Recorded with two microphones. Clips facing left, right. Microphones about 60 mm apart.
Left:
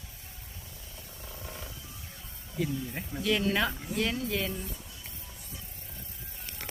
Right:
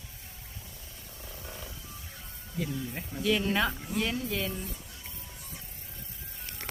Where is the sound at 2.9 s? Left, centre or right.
Centre.